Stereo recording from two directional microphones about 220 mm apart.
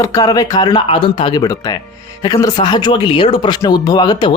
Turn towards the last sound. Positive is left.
turn(degrees=20)  # may be behind; listen again after turning